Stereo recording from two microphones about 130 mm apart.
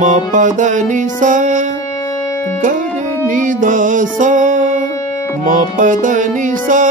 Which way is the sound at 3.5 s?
90° right.